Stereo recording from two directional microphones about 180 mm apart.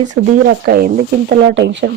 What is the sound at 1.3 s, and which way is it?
Speech, 75° right (ahead or behind).